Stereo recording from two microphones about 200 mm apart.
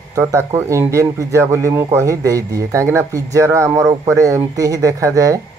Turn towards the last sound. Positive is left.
turn(degrees=-15)  # may be behind; listen again after turning